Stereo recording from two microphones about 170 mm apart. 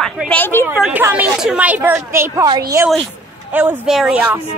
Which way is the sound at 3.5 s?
10° right (ahead or behind).